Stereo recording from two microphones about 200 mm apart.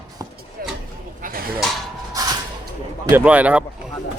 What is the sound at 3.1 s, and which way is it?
Speech, 5° right (ahead or behind).